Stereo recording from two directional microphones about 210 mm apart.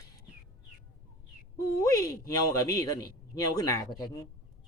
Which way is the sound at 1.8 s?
15° left (ahead or behind).